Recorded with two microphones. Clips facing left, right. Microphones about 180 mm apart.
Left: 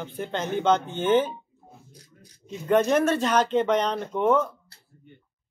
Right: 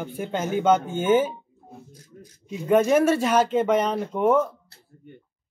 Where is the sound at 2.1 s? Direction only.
35° right (ahead or behind).